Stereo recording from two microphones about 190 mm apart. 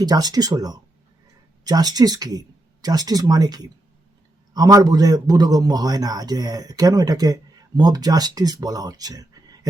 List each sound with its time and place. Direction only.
0.0 s a man's voice: 20° right (ahead or behind)